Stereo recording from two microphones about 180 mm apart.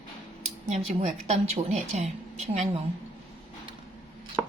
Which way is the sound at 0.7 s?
40° right (ahead or behind).